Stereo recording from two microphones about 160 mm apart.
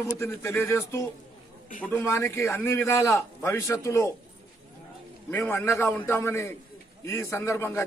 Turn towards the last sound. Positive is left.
turn(degrees=15)  # may be behind; listen again after turning